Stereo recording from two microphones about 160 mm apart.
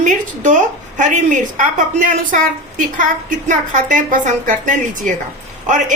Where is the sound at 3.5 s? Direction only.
55° right (ahead or behind).